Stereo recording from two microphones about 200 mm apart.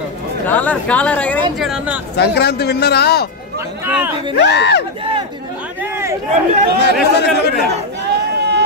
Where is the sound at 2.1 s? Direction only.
55° left (ahead or behind).